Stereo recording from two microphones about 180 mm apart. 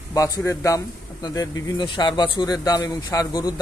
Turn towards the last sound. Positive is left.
turn(degrees=20)  # may be behind; listen again after turning